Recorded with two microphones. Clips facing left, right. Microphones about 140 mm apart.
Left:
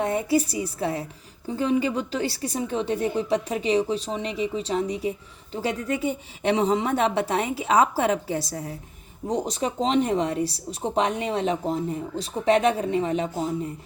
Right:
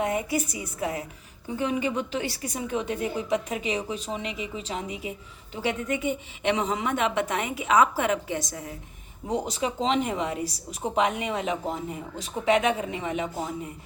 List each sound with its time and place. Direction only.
0.0 s a woman's voice: 35° left (ahead or behind)